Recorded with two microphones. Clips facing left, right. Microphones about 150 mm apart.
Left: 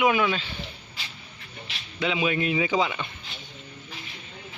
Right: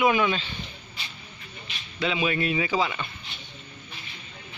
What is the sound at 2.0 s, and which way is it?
Speech, 15° left (ahead or behind).